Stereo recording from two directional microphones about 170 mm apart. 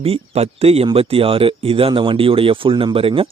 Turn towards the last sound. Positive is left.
turn(degrees=-30)  # may be behind; listen again after turning